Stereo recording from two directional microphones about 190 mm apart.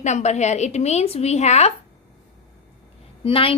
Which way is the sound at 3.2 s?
30° left (ahead or behind).